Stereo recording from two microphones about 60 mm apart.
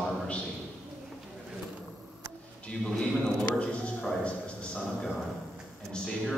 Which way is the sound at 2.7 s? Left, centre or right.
Centre.